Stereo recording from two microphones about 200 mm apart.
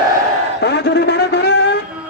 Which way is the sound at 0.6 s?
60° left (ahead or behind).